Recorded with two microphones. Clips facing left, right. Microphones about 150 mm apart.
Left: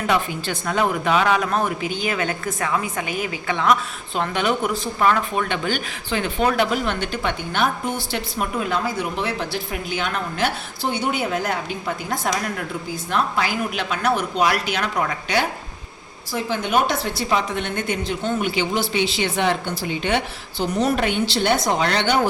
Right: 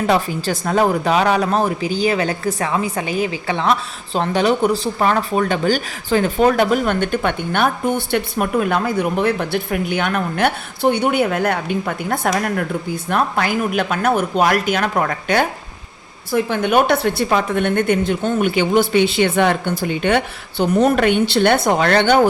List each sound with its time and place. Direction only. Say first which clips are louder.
0.1 s a woman's voice: right 1 dB; 40° right (ahead or behind)